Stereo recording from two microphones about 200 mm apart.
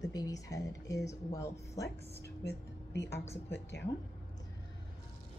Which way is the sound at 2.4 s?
60° left (ahead or behind).